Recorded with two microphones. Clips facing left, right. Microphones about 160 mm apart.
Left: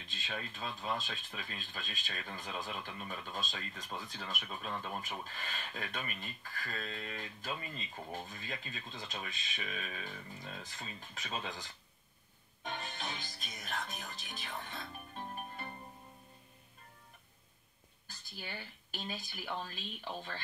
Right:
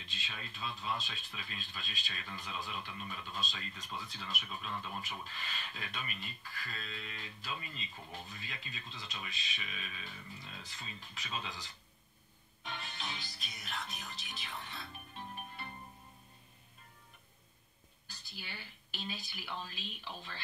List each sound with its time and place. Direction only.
0.0 s speech: 50° left (ahead or behind)
18.0 s speech: 50° left (ahead or behind)